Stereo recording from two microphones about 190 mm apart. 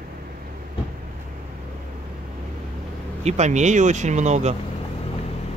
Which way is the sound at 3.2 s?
35° right (ahead or behind).